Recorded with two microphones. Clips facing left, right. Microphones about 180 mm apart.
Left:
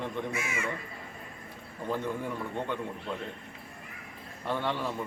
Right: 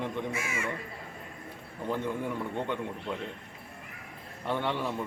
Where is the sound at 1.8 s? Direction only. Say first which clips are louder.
Right 1 dB; 15° right (ahead or behind).